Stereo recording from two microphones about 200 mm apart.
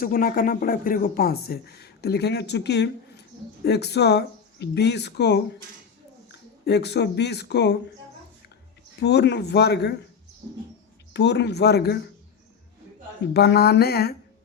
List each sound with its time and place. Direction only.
0.0 s speech: 45° left (ahead or behind)
6.7 s speech: 55° left (ahead or behind)
9.0 s speech: 55° left (ahead or behind)
11.1 s speech: 55° left (ahead or behind)
13.3 s a sound: 55° left (ahead or behind)